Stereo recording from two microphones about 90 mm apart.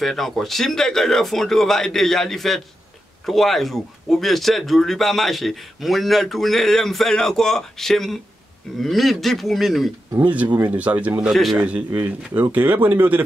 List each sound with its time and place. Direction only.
0.0 s speech: 5° left (ahead or behind)
10.2 s a man's voice: 15° right (ahead or behind)